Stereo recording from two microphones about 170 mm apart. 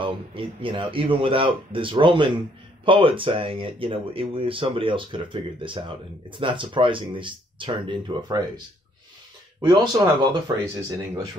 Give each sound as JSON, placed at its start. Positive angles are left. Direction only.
{"t": 0.0, "sound": "speech", "side_deg": -30}
{"t": 9.6, "sound": "speech", "side_deg": -25}